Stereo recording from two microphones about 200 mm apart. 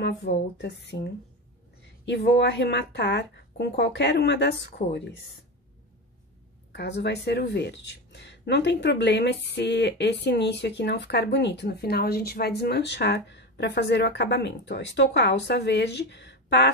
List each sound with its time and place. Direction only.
0.0 s speech: 55° left (ahead or behind)
6.7 s speech: 55° left (ahead or behind)